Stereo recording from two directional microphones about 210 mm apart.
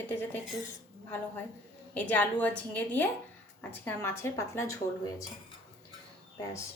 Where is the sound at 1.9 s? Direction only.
5° left (ahead or behind).